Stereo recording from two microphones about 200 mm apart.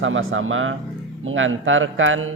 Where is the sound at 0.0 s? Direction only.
80° right.